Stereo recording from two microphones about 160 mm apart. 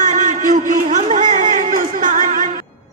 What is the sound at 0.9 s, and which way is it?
Chatter, 45° right (ahead or behind).